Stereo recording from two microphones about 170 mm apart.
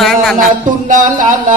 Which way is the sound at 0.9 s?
50° right (ahead or behind).